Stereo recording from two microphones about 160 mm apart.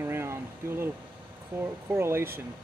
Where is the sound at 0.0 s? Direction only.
15° right (ahead or behind).